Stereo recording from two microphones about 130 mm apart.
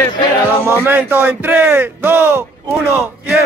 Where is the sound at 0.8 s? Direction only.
15° right (ahead or behind).